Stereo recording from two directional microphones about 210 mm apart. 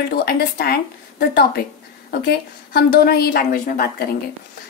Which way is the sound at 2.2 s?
50° left (ahead or behind).